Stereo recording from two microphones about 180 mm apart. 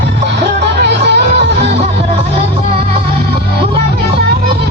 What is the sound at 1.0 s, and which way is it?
Music, 70° right (ahead or behind).